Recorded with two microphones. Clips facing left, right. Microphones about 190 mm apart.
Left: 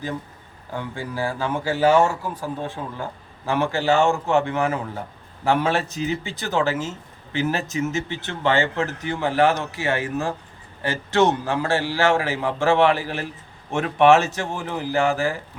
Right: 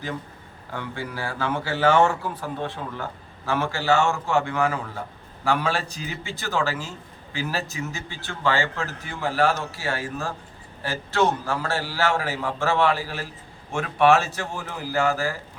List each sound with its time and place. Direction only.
0.8 s speech: 15° left (ahead or behind)